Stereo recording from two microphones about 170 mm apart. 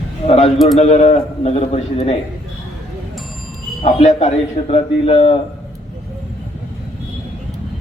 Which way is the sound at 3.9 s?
40° left (ahead or behind).